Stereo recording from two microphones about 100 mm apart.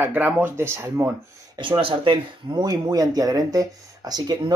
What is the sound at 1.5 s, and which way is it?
Speech, 60° right (ahead or behind).